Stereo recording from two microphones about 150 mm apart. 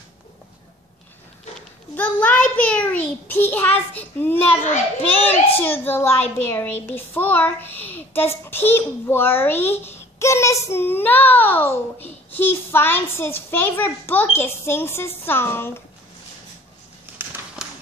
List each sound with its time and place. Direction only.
2.0 s a child's voice: 10° left (ahead or behind)
4.7 s a child's voice: 45° left (ahead or behind)
5.6 s a child's voice: 15° left (ahead or behind)
17.6 s run: 5° right (ahead or behind)